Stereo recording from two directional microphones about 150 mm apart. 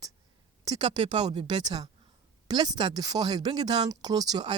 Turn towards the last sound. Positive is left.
turn(degrees=-25)  # may be behind; listen again after turning